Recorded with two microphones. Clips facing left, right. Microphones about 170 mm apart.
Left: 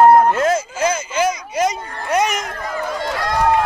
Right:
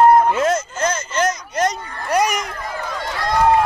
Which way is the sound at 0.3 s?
Centre (ahead or behind).